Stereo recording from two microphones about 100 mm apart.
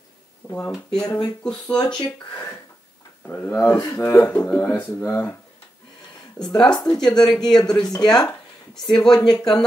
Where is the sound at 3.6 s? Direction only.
35° left (ahead or behind).